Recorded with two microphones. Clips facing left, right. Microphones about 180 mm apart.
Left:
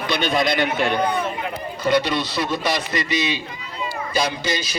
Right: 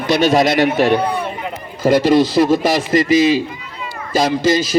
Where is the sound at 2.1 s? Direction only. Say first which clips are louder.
Right 11 dB; 90° right.